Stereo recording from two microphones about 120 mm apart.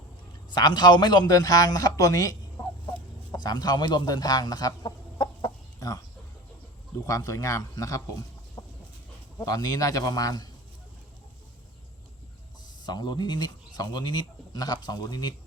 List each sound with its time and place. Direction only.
0.5 s speech: 35° left (ahead or behind)
5.8 s speech: 30° left (ahead or behind)
7.0 s speech: 25° left (ahead or behind)
8.6 s chicken: 30° left (ahead or behind)
9.4 s speech: 30° left (ahead or behind)
12.6 s speech: 35° left (ahead or behind)